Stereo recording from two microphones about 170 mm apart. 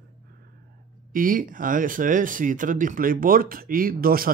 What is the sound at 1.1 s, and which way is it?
Speech, 55° right (ahead or behind).